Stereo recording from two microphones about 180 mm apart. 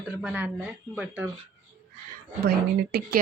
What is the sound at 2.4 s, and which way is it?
Speech, 60° right (ahead or behind).